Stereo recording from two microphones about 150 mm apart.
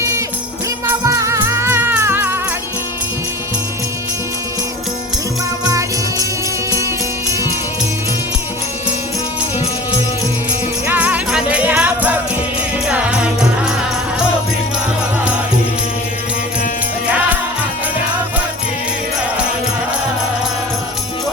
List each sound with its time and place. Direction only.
0.9 s music: 20° right (ahead or behind)
5.6 s jingle bell: 25° right (ahead or behind)
10.8 s jingle bell: 10° right (ahead or behind)